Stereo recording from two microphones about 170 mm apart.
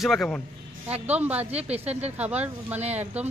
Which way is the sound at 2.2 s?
10° right (ahead or behind).